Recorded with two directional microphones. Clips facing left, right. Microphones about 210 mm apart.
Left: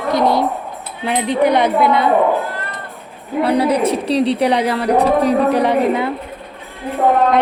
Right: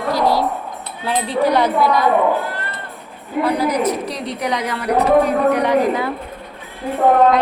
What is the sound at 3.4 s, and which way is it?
A woman's voice, 30° left (ahead or behind).